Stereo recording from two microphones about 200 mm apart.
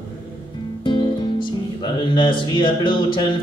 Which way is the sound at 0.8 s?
25° left (ahead or behind).